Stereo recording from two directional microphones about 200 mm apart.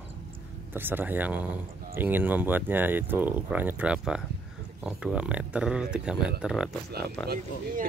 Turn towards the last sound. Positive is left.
turn(degrees=-50)  # may be behind; listen again after turning